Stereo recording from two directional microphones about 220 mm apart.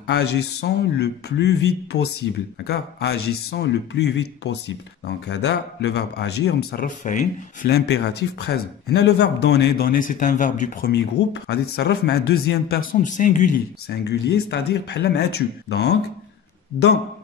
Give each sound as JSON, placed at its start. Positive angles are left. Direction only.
{"t": 0.0, "sound": "a man's voice", "side_deg": 50}
{"t": 10.9, "sound": "a man's voice", "side_deg": 50}